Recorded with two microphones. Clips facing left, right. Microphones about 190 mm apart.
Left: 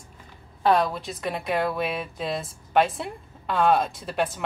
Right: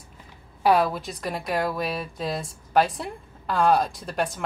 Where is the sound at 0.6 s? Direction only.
10° right (ahead or behind).